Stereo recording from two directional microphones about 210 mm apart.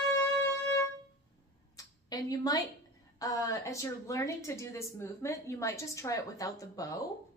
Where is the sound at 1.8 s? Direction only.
15° left (ahead or behind).